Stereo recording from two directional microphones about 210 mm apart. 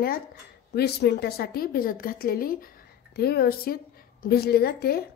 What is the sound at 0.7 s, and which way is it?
A woman's voice, 50° left (ahead or behind).